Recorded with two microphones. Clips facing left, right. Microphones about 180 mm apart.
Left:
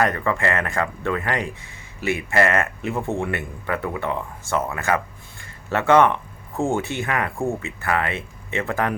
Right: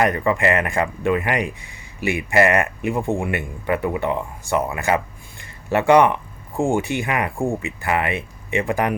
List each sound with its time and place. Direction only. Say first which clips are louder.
0.0 s speech: right 3 dB; 15° right (ahead or behind)